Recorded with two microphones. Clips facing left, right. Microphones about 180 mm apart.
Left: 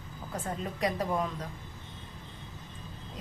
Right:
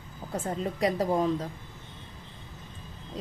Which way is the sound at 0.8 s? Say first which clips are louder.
Right 5 dB; 30° right (ahead or behind).